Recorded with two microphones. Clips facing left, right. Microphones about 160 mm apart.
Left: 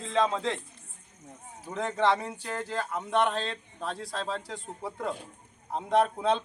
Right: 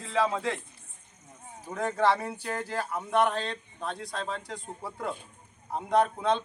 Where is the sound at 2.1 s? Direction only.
20° left (ahead or behind).